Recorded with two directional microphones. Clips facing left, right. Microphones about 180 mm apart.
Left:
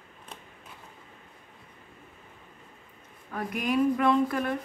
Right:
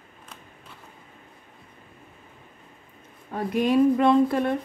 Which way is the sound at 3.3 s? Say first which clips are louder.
Right 6 dB; 25° right (ahead or behind).